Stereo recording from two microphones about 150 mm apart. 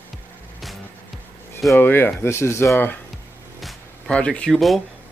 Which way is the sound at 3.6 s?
5° left (ahead or behind).